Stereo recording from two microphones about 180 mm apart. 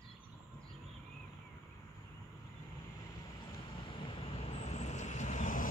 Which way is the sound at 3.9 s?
30° left (ahead or behind).